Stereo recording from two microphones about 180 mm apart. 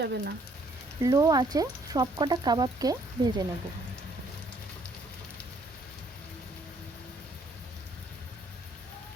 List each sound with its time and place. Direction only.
0.0 s speech: 65° right (ahead or behind)
1.0 s speech: 20° right (ahead or behind)